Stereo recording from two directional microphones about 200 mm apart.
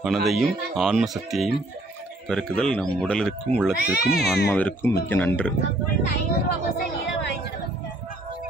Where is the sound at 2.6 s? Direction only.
Centre (ahead or behind).